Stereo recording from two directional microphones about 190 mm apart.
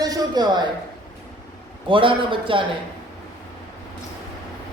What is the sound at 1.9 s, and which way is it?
Speech, 25° right (ahead or behind).